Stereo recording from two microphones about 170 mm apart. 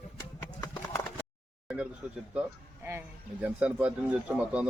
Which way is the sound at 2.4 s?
10° right (ahead or behind).